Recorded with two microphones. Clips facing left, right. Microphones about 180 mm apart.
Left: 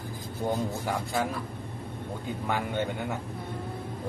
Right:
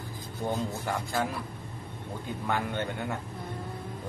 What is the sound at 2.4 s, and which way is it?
Speech, 5° left (ahead or behind).